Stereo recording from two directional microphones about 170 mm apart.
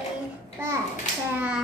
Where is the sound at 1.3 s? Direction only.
5° right (ahead or behind).